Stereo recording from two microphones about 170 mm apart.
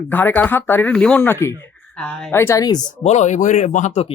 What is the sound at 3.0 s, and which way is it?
Speech, 40° left (ahead or behind).